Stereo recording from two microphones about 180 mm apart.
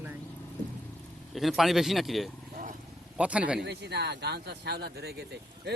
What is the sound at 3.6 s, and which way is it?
Speech, 70° right (ahead or behind).